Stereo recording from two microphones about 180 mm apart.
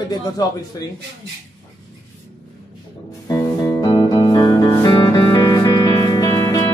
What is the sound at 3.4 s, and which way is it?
Music, 15° left (ahead or behind).